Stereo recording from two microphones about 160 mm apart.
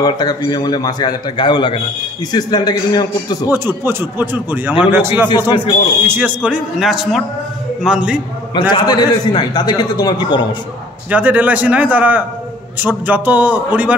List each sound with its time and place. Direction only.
0.0 s a man's voice: 25° left (ahead or behind)
3.4 s speech: 15° right (ahead or behind)
8.5 s a man's voice: 25° left (ahead or behind)
11.1 s speech: 10° right (ahead or behind)